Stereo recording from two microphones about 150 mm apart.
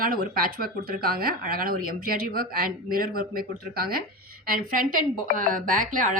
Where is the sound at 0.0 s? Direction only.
70° right (ahead or behind).